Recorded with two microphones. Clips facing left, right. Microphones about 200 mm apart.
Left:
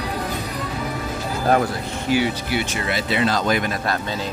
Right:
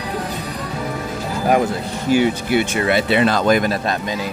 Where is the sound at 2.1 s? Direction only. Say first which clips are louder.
Right 5 dB; 50° right (ahead or behind).